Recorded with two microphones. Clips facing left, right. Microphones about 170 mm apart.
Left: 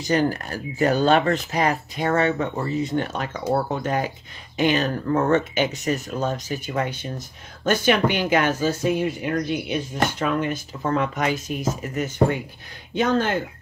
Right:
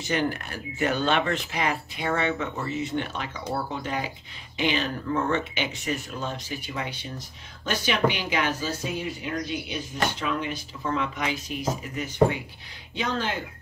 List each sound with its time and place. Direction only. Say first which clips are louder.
0.0 s speech: left 5 dB; 40° left (ahead or behind)